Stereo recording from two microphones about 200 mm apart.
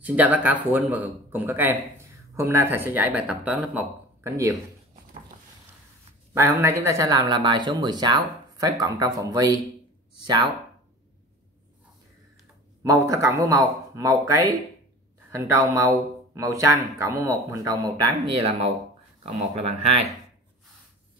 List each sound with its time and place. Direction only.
0.0 s speech: 10° right (ahead or behind)
6.3 s speech: 15° right (ahead or behind)
12.8 s speech: 15° right (ahead or behind); by 20.1 s 30° right (ahead or behind)